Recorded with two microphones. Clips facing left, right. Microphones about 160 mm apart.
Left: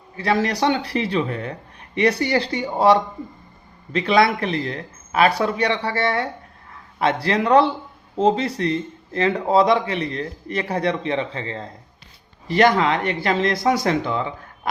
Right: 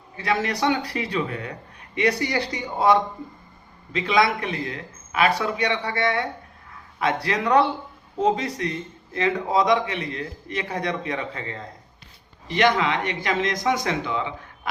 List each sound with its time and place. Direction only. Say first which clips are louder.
0.2 s speech: left 4 dB; 35° left (ahead or behind)
4.2 s speech: left 2 dB; 35° left (ahead or behind)